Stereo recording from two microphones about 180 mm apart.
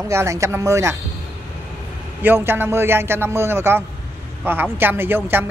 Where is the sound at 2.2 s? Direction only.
10° right (ahead or behind).